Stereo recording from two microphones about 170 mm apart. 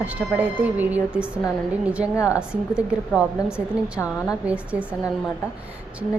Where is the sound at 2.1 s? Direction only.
20° left (ahead or behind).